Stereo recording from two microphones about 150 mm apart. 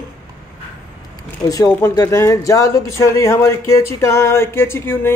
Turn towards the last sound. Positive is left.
turn(degrees=15)  # may be behind; listen again after turning